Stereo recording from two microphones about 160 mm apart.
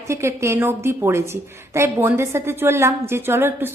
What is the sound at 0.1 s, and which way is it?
A woman's voice, 15° right (ahead or behind).